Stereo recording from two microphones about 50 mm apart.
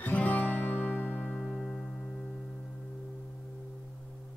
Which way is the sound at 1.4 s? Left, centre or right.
Centre.